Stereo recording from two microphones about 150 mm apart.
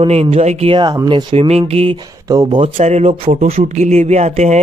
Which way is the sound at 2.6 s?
50° right (ahead or behind).